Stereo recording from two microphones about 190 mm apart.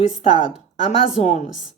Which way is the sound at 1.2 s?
35° left (ahead or behind).